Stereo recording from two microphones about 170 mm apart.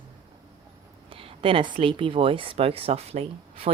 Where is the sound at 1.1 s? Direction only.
30° right (ahead or behind).